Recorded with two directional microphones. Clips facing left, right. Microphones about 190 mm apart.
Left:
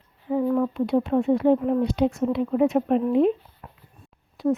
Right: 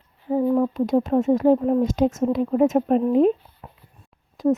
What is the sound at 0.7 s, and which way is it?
Speech, 40° right (ahead or behind).